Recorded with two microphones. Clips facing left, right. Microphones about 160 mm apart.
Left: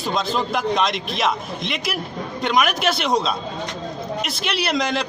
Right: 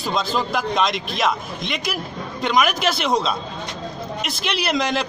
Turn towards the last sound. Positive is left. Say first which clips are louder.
# even
turn(degrees=0)  # may be behind; listen again after turning